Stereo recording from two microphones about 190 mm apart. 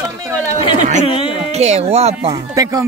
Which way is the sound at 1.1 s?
30° left (ahead or behind).